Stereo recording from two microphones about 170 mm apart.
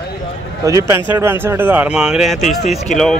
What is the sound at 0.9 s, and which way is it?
Speech, 15° right (ahead or behind).